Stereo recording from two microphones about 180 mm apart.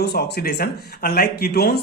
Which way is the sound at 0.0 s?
60° left (ahead or behind).